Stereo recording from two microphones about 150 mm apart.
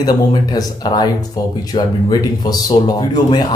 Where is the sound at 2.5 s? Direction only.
25° left (ahead or behind).